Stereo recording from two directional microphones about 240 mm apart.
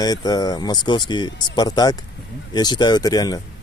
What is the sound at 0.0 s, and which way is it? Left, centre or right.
Speech, centre.